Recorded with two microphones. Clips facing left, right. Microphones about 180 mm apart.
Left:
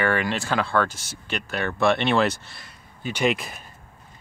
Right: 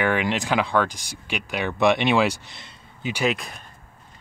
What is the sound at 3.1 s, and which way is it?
Speech, centre (ahead or behind).